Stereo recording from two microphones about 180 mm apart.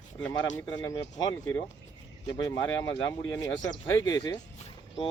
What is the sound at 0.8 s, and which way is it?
Speech, 20° left (ahead or behind).